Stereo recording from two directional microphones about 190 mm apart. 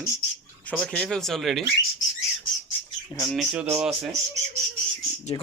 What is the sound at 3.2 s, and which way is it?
Speech, 10° left (ahead or behind).